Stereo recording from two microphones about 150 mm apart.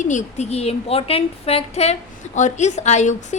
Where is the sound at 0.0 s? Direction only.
55° left (ahead or behind).